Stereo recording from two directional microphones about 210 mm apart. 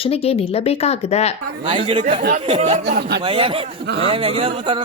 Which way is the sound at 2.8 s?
45° right (ahead or behind).